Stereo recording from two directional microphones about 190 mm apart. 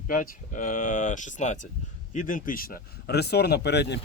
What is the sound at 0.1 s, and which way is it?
Speech, 45° left (ahead or behind).